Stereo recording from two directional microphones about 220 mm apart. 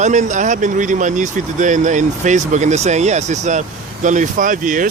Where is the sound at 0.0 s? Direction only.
35° right (ahead or behind).